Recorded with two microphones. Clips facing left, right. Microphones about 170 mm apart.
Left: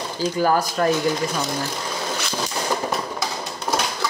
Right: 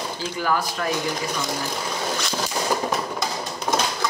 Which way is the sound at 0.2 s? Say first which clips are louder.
Left 6 dB; 40° left (ahead or behind).